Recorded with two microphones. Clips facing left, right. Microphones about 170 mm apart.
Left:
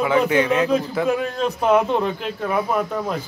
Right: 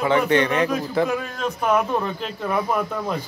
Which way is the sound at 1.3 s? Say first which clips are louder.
Left 2 dB; 30° left (ahead or behind).